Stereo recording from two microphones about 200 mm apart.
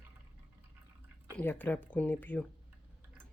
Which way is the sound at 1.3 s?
10° left (ahead or behind).